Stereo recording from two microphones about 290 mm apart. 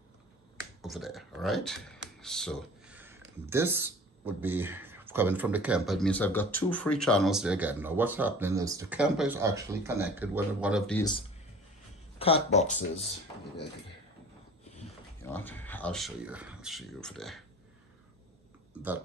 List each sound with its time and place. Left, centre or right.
0.8 s speech: centre
12.2 s speech: centre
15.2 s speech: centre